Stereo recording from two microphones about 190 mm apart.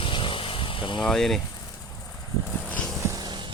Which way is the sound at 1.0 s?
Centre (ahead or behind).